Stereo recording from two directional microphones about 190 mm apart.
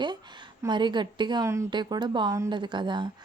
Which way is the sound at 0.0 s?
25° right (ahead or behind).